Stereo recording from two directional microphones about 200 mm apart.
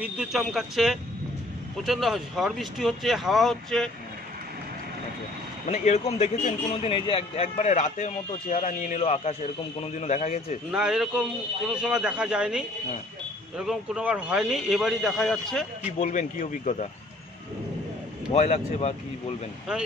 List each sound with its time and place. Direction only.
0.0 s speech: centre (ahead or behind)
5.7 s a man's voice: 35° left (ahead or behind)
10.7 s speech: 5° right (ahead or behind)
16.0 s a man's voice: 40° left (ahead or behind)
18.3 s a man's voice: 30° left (ahead or behind)